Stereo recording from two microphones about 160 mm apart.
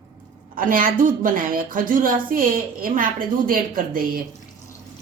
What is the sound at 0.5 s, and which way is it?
A woman's voice, 60° right (ahead or behind).